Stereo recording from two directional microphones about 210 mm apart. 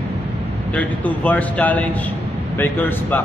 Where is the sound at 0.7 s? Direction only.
5° left (ahead or behind).